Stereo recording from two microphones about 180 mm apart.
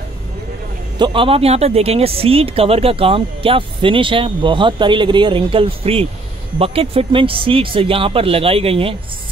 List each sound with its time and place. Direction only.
0.9 s speech: 25° right (ahead or behind)